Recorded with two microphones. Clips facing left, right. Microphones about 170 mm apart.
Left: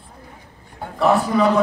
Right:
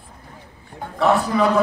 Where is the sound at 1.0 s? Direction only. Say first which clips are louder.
Left 1 dB; centre (ahead or behind).